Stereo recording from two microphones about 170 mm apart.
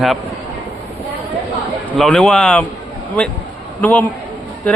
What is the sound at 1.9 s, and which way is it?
Speech, 5° left (ahead or behind).